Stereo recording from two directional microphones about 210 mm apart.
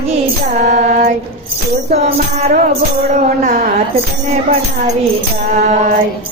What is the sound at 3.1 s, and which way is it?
Music, 35° right (ahead or behind).